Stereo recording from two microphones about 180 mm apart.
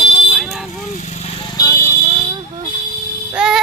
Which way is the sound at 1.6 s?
20° left (ahead or behind).